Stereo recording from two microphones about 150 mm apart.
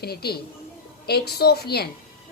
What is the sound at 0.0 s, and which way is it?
A woman's voice, 90° left.